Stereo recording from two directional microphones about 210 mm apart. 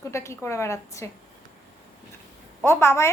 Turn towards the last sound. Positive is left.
turn(degrees=15)  # may be behind; listen again after turning